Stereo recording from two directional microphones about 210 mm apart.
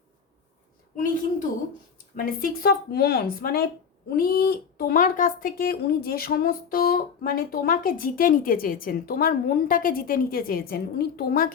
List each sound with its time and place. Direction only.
2.1 s speech: 45° left (ahead or behind)